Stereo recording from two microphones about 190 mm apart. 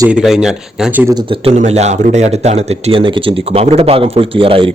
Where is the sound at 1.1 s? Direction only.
30° right (ahead or behind).